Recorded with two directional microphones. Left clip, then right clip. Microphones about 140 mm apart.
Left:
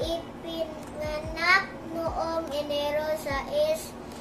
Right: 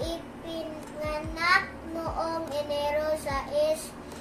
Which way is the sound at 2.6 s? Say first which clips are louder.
Right 2 dB; 20° left (ahead or behind).